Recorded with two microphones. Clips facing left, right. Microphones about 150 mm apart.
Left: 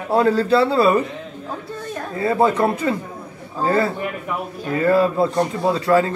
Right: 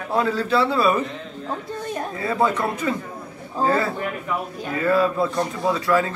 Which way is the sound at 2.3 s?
30° left (ahead or behind).